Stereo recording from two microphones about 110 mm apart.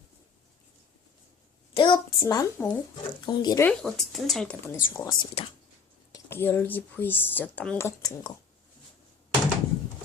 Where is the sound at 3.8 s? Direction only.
Centre (ahead or behind).